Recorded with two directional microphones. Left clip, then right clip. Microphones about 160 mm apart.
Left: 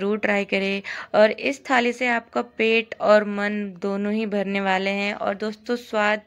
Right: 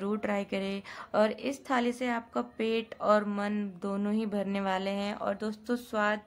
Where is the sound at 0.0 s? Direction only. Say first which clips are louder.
Left 10 dB; 20° left (ahead or behind).